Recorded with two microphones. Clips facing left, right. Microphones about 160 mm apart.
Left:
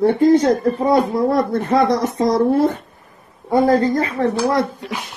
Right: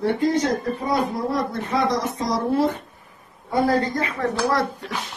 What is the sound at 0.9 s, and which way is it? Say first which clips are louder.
Speech: left 6 dB; 55° left (ahead or behind).